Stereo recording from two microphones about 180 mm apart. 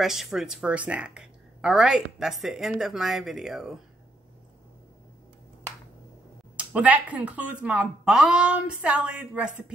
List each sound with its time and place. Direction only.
0.0 s speech: centre (ahead or behind)
6.5 s speech: 5° right (ahead or behind)